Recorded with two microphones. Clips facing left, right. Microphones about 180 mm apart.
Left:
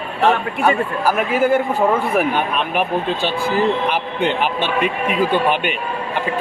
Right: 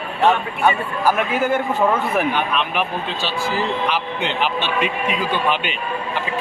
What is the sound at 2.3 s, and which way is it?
Speech, 50° left (ahead or behind).